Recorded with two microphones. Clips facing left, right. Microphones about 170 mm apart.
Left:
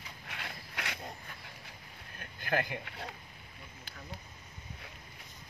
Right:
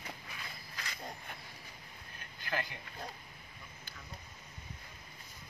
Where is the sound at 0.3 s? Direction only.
75° left (ahead or behind).